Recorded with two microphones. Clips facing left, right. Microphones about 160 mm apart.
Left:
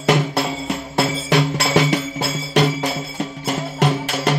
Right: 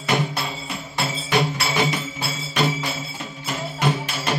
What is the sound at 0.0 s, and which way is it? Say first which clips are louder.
Music: left 6 dB; 75° left (ahead or behind).